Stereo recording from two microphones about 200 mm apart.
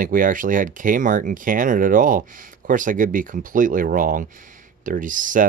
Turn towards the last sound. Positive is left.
turn(degrees=-40)  # may be behind; listen again after turning